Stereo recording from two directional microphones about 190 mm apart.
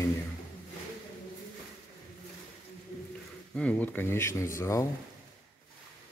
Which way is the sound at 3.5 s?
5° left (ahead or behind).